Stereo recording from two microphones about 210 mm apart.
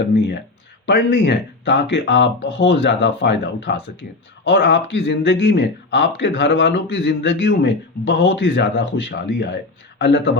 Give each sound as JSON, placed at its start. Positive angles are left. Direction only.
{"t": 0.9, "sound": "speech", "side_deg": 55}